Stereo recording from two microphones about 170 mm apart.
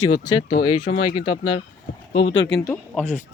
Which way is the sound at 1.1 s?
30° left (ahead or behind).